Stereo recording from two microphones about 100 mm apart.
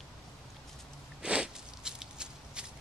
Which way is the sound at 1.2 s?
10° right (ahead or behind).